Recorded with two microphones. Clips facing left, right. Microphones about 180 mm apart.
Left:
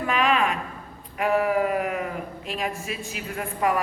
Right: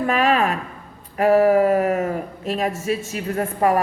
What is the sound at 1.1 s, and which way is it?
A woman's voice, 40° right (ahead or behind).